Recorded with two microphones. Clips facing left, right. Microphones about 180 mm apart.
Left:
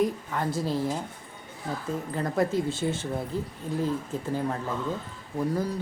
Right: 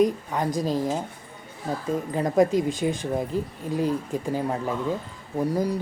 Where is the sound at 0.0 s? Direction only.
20° right (ahead or behind).